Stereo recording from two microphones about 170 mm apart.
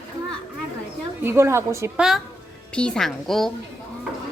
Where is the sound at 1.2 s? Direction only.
15° right (ahead or behind).